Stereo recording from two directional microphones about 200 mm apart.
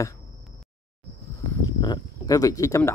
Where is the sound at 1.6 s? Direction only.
20° left (ahead or behind).